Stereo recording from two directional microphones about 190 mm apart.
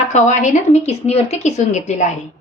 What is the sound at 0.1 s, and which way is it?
A woman's voice, 40° left (ahead or behind).